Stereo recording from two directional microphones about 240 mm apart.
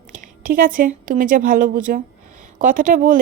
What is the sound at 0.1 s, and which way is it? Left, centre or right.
A woman's voice, right.